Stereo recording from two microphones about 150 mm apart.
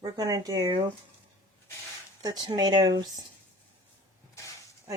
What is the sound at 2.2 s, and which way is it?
Speech, 25° right (ahead or behind).